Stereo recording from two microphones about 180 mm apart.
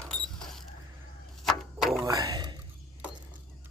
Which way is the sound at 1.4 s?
Centre (ahead or behind).